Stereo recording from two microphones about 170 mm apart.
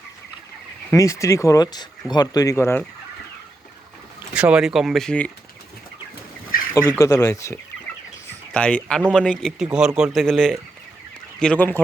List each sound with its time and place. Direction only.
0.9 s speech: 15° left (ahead or behind)
4.4 s speech: 5° right (ahead or behind)
7.0 s speech: 20° left (ahead or behind)
8.5 s speech: 5° left (ahead or behind)